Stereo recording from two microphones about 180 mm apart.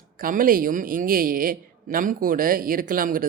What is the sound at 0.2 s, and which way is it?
A woman's voice, 50° right (ahead or behind).